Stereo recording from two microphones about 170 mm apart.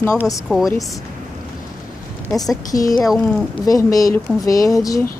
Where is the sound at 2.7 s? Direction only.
55° left (ahead or behind).